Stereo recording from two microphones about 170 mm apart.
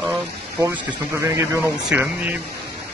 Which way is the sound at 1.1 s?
15° right (ahead or behind).